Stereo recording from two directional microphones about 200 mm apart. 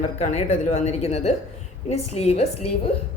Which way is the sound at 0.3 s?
35° left (ahead or behind).